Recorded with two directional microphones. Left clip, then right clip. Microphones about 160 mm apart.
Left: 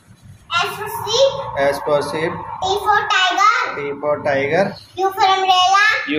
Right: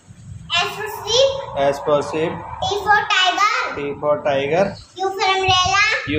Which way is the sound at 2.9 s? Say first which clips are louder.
Right 1 dB; 20° right (ahead or behind).